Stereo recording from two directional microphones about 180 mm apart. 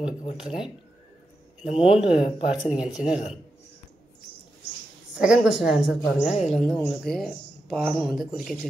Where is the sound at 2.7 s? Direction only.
5° right (ahead or behind).